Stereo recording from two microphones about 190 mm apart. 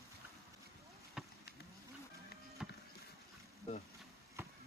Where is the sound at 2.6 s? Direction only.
5° right (ahead or behind).